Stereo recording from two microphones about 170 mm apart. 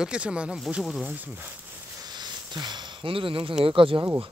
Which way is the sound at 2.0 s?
25° right (ahead or behind).